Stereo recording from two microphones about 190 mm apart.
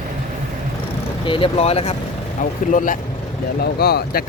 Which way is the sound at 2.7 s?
45° left (ahead or behind).